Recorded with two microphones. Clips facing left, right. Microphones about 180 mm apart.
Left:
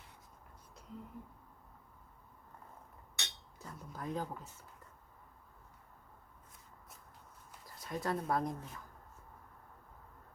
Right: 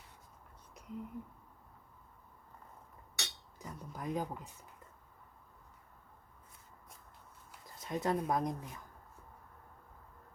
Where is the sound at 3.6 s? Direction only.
15° right (ahead or behind).